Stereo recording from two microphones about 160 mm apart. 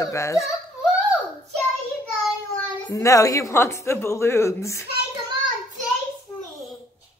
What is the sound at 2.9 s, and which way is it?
A woman's voice, 20° left (ahead or behind).